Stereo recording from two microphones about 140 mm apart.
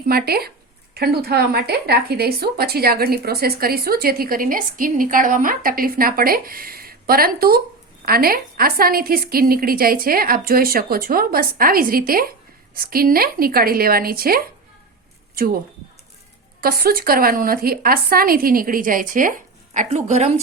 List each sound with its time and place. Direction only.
0.1 s a woman's voice: 90° right
2.0 s a woman's voice: 90° right
16.6 s a woman's voice: 90° right; by 20.0 s 60° right (ahead or behind)
20.1 s speech: 50° right (ahead or behind)